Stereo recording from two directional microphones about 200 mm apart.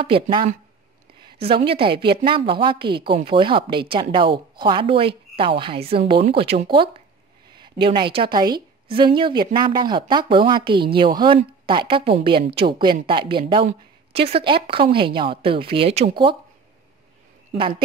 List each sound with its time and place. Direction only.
0.0 s a woman's voice: 25° right (ahead or behind)